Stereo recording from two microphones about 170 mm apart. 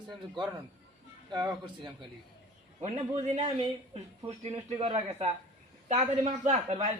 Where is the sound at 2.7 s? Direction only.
40° right (ahead or behind).